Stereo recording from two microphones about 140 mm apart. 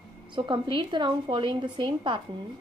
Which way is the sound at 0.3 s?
35° right (ahead or behind).